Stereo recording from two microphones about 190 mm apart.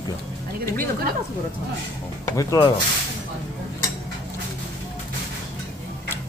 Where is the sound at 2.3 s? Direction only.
20° left (ahead or behind).